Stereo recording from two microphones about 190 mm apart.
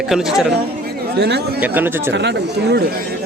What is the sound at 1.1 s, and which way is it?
Speech, 60° right (ahead or behind).